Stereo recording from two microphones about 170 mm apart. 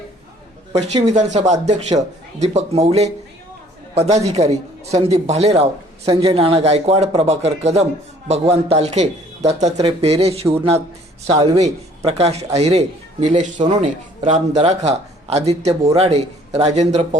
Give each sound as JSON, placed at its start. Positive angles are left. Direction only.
{"t": 1.0, "sound": "a man's voice", "side_deg": -45}